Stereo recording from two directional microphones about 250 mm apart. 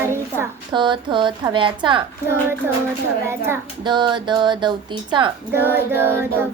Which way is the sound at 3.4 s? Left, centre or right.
Centre.